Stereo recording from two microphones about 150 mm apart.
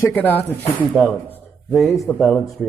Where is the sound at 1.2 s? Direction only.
10° left (ahead or behind).